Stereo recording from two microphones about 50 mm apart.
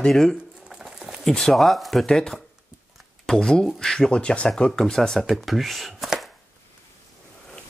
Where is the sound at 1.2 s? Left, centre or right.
Centre.